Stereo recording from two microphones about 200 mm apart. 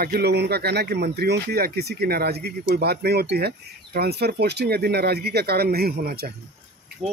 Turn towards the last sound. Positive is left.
turn(degrees=0)  # may be behind; listen again after turning